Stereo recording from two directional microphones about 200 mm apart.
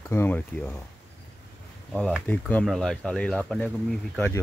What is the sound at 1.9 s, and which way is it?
Speech, 5° left (ahead or behind).